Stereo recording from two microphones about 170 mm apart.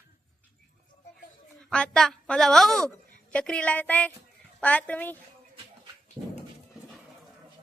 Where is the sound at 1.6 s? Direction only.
5° left (ahead or behind).